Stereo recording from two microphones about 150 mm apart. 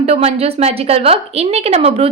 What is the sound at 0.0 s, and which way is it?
A woman's voice, 45° right (ahead or behind).